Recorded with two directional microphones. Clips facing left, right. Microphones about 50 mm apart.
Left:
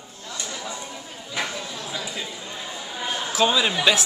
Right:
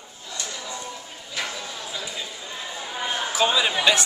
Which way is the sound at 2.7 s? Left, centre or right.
Right.